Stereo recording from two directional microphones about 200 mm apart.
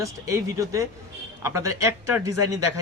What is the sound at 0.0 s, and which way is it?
Speech, 15° right (ahead or behind).